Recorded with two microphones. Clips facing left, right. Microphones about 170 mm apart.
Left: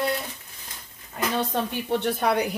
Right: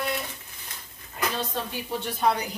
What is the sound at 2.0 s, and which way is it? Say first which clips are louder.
Speech: even; 65° left (ahead or behind).